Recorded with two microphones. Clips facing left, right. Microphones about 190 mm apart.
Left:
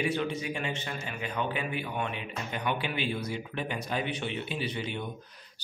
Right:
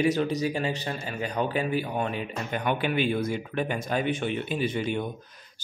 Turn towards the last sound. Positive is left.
turn(degrees=-50)  # may be behind; listen again after turning